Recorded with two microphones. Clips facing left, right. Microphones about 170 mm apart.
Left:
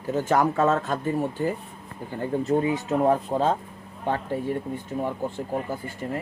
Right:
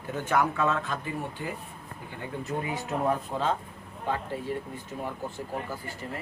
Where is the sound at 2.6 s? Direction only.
30° left (ahead or behind).